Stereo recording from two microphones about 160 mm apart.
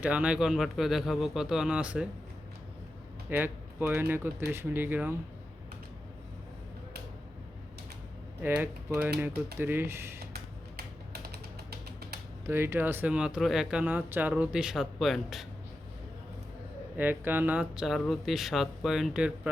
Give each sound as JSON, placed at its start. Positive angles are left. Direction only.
{"t": 0.0, "sound": "speech", "side_deg": -10}
{"t": 3.2, "sound": "speech", "side_deg": -10}
{"t": 8.4, "sound": "speech", "side_deg": -10}
{"t": 10.3, "sound": "a sound", "side_deg": -80}
{"t": 12.5, "sound": "speech", "side_deg": -15}
{"t": 17.0, "sound": "speech", "side_deg": -10}